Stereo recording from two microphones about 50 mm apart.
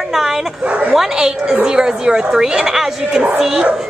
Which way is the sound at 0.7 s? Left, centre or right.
Right.